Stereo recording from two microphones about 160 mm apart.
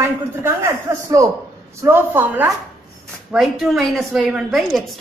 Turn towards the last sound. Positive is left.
turn(degrees=0)  # may be behind; listen again after turning